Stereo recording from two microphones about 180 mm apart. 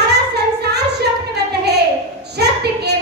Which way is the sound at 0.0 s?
65° right (ahead or behind).